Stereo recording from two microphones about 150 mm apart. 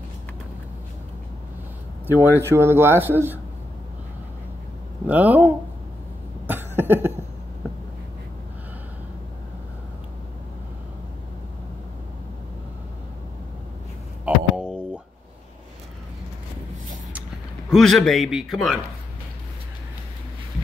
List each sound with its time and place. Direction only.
2.0 s speech: 15° right (ahead or behind)
5.0 s speech: 10° right (ahead or behind)
6.4 s cough: 15° right (ahead or behind)
14.2 s a sound: 5° right (ahead or behind)
17.6 s a man's voice: centre (ahead or behind)